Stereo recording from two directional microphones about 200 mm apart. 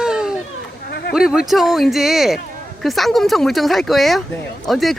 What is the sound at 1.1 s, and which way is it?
Speech, 5° right (ahead or behind).